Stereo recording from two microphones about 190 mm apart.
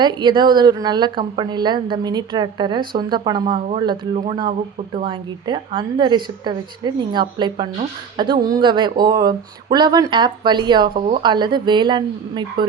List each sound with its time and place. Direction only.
0.0 s a woman's voice: 25° right (ahead or behind)